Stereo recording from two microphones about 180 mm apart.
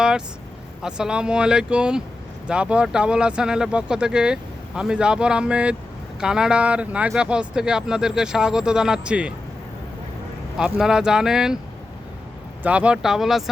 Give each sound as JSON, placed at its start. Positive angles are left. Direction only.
{"t": 0.8, "sound": "speech", "side_deg": -5}
{"t": 10.6, "sound": "speech", "side_deg": -5}
{"t": 12.6, "sound": "speech", "side_deg": -5}